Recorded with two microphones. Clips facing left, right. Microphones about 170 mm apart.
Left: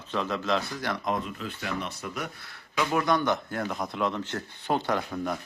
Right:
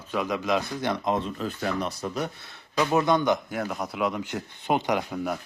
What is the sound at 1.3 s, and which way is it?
Speech, 40° right (ahead or behind).